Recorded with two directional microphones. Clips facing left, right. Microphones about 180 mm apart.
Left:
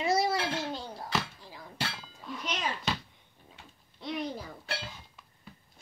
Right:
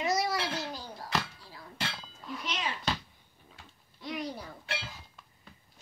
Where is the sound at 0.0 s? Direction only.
30° left (ahead or behind).